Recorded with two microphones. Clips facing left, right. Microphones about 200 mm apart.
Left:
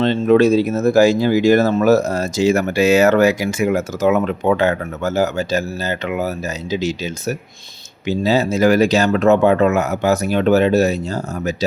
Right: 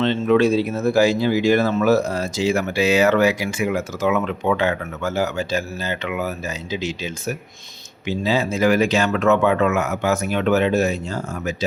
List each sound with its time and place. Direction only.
0.0 s speech: 40° left (ahead or behind)